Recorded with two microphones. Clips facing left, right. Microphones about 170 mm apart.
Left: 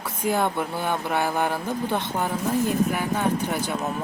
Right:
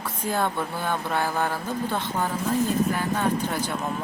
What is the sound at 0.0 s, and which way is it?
Speech, 10° left (ahead or behind).